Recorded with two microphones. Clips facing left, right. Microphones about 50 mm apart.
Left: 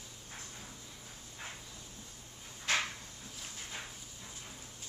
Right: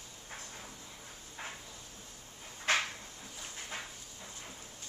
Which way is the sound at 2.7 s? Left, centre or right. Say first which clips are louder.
Right 2 dB; right.